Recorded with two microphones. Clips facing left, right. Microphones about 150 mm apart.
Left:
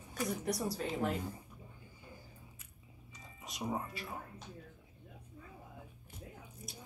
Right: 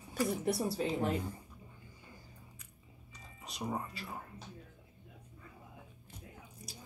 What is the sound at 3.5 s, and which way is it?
Speech, centre (ahead or behind).